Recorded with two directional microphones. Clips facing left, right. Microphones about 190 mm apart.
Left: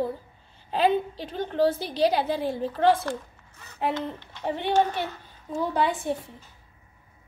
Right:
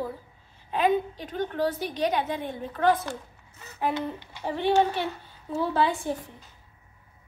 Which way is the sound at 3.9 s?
10° right (ahead or behind).